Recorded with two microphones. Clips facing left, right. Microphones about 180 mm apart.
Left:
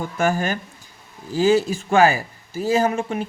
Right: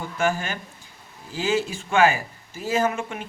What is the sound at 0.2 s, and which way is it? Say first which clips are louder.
Speech: left 3 dB; 40° left (ahead or behind).